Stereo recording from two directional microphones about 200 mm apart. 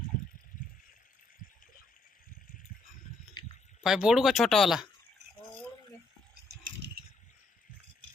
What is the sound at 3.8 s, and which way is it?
Speech, 5° right (ahead or behind).